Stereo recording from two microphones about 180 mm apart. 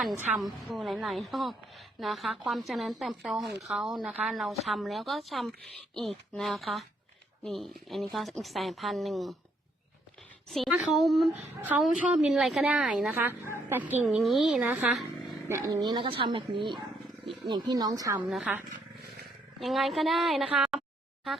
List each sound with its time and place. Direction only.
0.0 s a woman's voice: centre (ahead or behind)
10.5 s a woman's voice: 5° right (ahead or behind)
15.4 s speech: 15° right (ahead or behind)
18.2 s a woman's voice: 5° right (ahead or behind)